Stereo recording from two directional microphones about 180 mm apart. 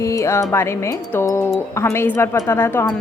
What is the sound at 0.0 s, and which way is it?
Speech, 15° left (ahead or behind).